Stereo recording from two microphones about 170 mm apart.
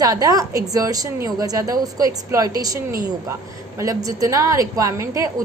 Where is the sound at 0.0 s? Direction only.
20° right (ahead or behind).